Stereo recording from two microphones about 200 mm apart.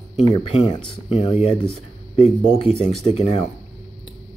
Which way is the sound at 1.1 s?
30° left (ahead or behind).